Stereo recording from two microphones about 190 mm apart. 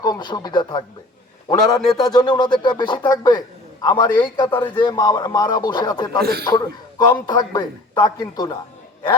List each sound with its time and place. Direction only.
0.0 s a man's voice: 20° left (ahead or behind)
1.8 s speech: centre (ahead or behind)
2.0 s a man's voice: 20° left (ahead or behind)
6.1 s a man's voice: 55° right (ahead or behind)
7.0 s a man's voice: 20° left (ahead or behind)